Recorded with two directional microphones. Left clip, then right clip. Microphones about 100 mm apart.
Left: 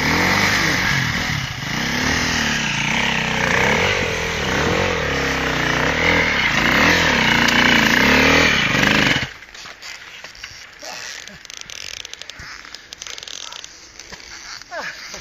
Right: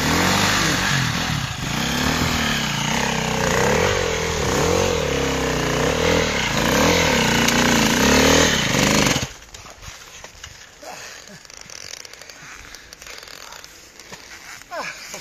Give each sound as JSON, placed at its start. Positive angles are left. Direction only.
{"t": 0.0, "sound": "motorcycle", "side_deg": 0}
{"t": 2.9, "sound": "a sound", "side_deg": -30}
{"t": 4.7, "sound": "vehicle", "side_deg": -55}
{"t": 7.0, "sound": "chainsaw", "side_deg": -60}
{"t": 8.3, "sound": "motorcycle", "side_deg": -30}